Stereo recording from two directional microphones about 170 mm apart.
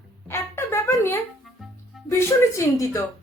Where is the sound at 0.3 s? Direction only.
15° left (ahead or behind).